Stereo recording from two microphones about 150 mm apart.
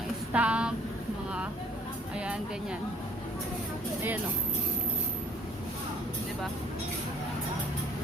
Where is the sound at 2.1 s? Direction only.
5° right (ahead or behind).